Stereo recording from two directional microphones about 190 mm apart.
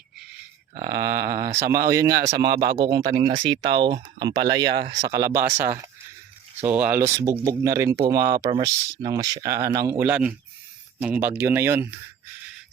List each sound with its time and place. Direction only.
0.9 s speech: 15° right (ahead or behind)
4.6 s speech: 60° right (ahead or behind)
5.0 s speech: 15° right (ahead or behind)